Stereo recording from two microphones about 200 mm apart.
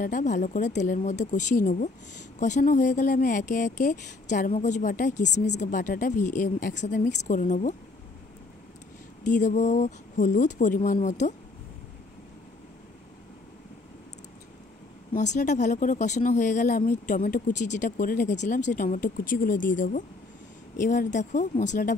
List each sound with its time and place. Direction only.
0.0 s speech: 40° left (ahead or behind)
9.2 s speech: 40° left (ahead or behind)
15.1 s speech: 35° left (ahead or behind)
20.7 s speech: 40° left (ahead or behind)